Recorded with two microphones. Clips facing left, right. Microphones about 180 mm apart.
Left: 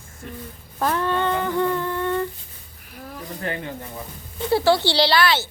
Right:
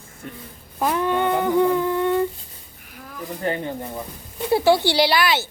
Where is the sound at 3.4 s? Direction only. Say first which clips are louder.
Right 5 dB; 30° right (ahead or behind).